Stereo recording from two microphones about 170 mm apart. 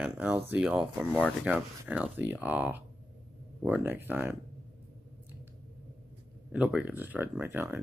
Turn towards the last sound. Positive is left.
turn(degrees=-15)  # may be behind; listen again after turning